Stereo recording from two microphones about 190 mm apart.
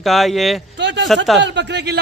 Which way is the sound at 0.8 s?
65° right (ahead or behind).